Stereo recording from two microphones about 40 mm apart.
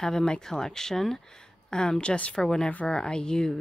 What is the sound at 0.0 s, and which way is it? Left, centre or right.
Speech, centre.